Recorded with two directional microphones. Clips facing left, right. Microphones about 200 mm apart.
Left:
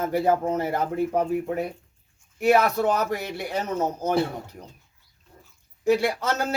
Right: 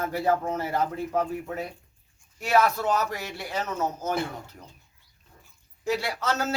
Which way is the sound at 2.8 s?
55° left (ahead or behind).